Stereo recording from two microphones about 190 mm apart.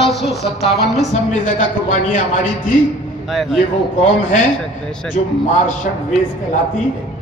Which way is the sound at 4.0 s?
40° left (ahead or behind).